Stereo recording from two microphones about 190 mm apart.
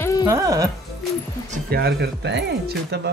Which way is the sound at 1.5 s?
55° right (ahead or behind).